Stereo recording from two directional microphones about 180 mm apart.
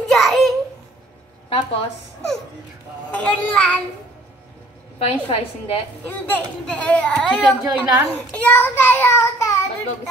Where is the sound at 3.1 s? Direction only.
5° left (ahead or behind).